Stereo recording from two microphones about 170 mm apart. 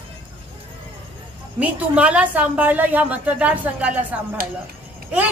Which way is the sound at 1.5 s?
5° right (ahead or behind).